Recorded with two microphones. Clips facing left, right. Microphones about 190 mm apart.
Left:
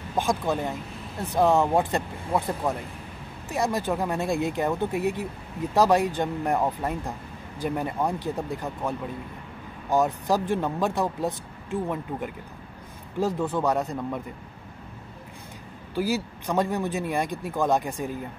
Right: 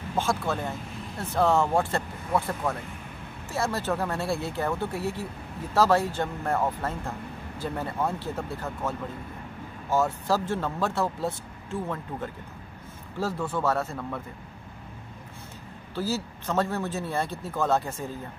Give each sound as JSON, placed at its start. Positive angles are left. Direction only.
{"t": 0.1, "sound": "speech", "side_deg": 15}
{"t": 15.9, "sound": "speech", "side_deg": 15}